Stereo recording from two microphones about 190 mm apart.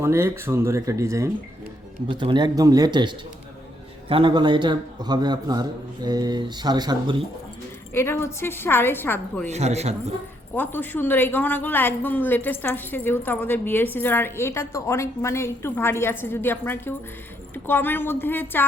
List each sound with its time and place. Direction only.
0.0 s a man's voice: 15° right (ahead or behind)
7.9 s a woman's voice: 15° left (ahead or behind)
9.5 s a man's voice: 35° right (ahead or behind)
10.5 s a woman's voice: 10° left (ahead or behind)